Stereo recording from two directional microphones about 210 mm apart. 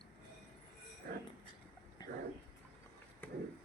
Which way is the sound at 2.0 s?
20° left (ahead or behind).